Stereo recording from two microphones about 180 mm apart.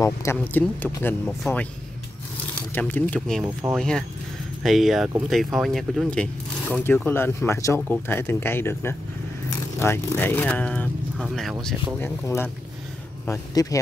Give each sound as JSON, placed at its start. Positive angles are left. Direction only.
{"t": 0.0, "sound": "speech", "side_deg": 15}
{"t": 2.7, "sound": "speech", "side_deg": 10}
{"t": 12.0, "sound": "speech", "side_deg": 10}